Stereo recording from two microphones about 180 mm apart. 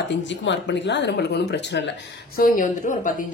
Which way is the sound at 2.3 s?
50° left (ahead or behind).